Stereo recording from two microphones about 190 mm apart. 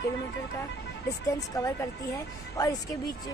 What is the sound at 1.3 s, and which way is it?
Speech, 15° left (ahead or behind).